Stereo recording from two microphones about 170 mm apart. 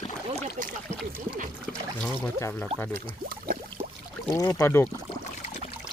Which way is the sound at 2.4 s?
15° left (ahead or behind).